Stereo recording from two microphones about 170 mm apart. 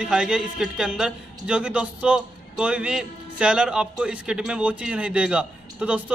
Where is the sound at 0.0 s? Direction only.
5° right (ahead or behind).